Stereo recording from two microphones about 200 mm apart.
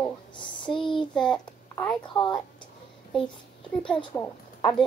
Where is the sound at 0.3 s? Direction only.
25° left (ahead or behind).